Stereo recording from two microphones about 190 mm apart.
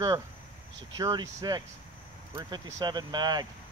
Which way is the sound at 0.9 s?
20° right (ahead or behind).